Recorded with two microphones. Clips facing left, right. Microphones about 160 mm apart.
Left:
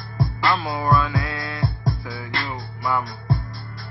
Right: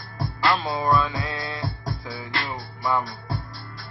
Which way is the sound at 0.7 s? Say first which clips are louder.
Left 1 dB; 20° right (ahead or behind).